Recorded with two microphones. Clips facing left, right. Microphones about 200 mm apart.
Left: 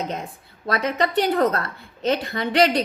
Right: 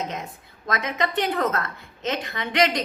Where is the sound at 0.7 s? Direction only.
35° left (ahead or behind).